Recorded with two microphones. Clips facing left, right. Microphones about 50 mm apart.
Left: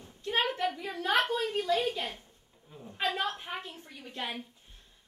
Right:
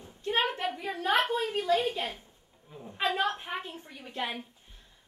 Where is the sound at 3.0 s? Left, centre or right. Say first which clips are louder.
Right 3 dB; right.